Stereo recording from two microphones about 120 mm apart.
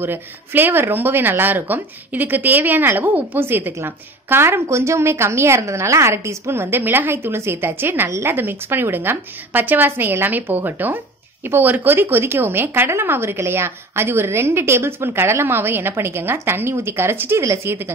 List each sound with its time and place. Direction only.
0.0 s speech: 15° right (ahead or behind)